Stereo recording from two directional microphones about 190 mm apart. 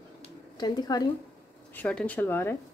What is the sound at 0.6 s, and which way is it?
Speech, 20° left (ahead or behind).